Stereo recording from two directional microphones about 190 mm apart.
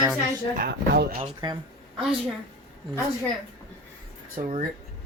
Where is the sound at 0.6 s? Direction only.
55° right (ahead or behind).